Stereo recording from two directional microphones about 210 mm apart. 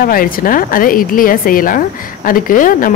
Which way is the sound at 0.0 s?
45° left (ahead or behind).